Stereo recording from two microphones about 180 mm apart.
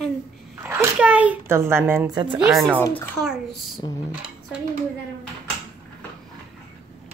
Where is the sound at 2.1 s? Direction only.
25° right (ahead or behind).